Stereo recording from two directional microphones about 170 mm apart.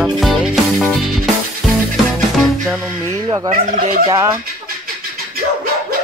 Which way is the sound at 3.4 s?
50° right (ahead or behind).